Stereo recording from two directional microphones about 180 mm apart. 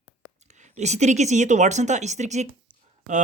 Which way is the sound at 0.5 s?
40° right (ahead or behind).